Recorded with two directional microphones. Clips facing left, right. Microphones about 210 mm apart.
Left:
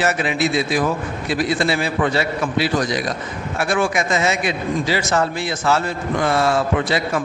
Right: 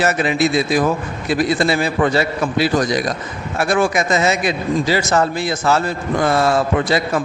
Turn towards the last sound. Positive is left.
turn(degrees=-40)  # may be behind; listen again after turning